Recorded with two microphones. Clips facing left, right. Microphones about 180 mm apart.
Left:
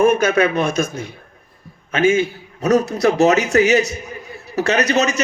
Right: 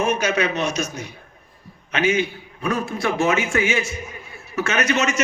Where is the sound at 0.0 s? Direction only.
55° left (ahead or behind).